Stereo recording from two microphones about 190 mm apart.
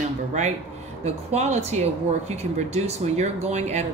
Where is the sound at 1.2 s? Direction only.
35° right (ahead or behind).